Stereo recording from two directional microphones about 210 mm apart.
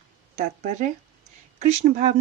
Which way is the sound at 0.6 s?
35° right (ahead or behind).